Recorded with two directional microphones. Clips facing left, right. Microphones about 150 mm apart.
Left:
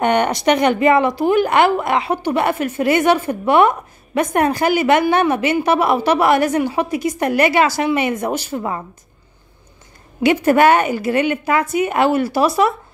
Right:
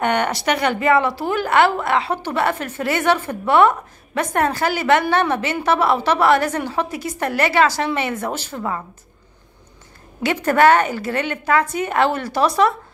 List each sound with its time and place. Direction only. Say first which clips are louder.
0.0 s speech: left 4 dB; 20° left (ahead or behind)
10.2 s speech: left 3 dB; 10° left (ahead or behind)